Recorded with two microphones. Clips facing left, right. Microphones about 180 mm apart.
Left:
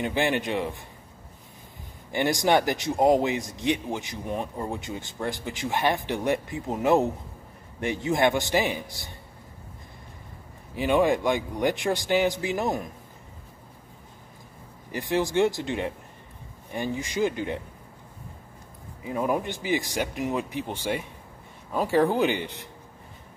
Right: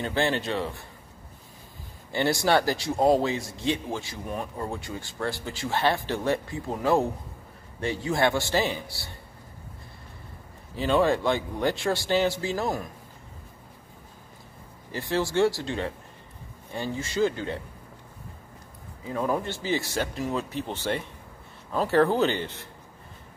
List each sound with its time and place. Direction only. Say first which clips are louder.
0.0 s a man's voice: left 1 dB; 15° left (ahead or behind)
2.1 s a man's voice: left 1 dB; 15° left (ahead or behind)
10.8 s a man's voice: left 1 dB; 15° left (ahead or behind)
14.9 s a man's voice: left 2 dB; 15° left (ahead or behind)
19.0 s a man's voice: left 1 dB; 15° left (ahead or behind)